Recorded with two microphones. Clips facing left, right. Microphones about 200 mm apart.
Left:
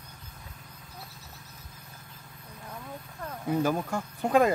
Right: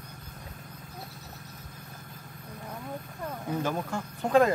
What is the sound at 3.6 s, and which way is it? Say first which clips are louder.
Speech: left 3 dB; 10° left (ahead or behind).